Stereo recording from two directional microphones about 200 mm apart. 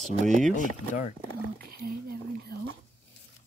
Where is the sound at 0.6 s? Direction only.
40° left (ahead or behind).